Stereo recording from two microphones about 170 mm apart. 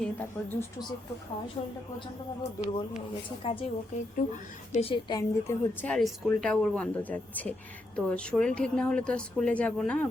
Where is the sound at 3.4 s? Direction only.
35° left (ahead or behind).